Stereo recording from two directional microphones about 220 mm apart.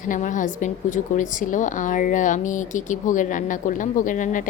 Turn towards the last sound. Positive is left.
turn(degrees=35)  # may be behind; listen again after turning